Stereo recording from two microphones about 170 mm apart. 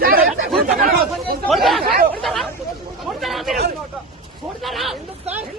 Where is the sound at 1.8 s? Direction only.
60° right (ahead or behind).